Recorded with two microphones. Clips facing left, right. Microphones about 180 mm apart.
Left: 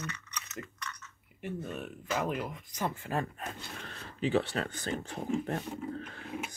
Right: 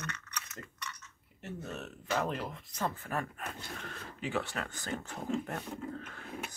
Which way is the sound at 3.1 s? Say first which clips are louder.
Left 3 dB; 30° left (ahead or behind).